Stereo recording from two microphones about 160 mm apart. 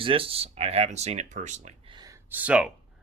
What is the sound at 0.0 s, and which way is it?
Speech, 35° right (ahead or behind).